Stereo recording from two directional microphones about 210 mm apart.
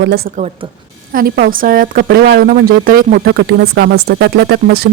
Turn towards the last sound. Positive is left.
turn(degrees=-50)  # may be behind; listen again after turning